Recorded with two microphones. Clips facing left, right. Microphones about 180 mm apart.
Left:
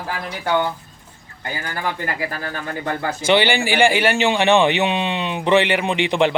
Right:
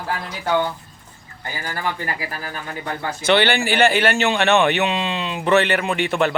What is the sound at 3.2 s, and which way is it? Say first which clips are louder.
Speech: even; 10° left (ahead or behind).